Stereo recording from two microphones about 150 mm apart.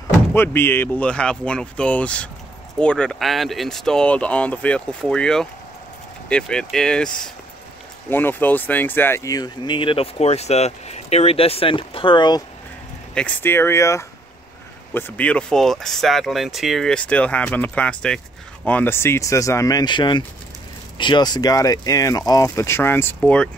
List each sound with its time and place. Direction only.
0.3 s speech: 15° left (ahead or behind); by 12.4 s 30° left (ahead or behind)
13.1 s speech: 10° left (ahead or behind)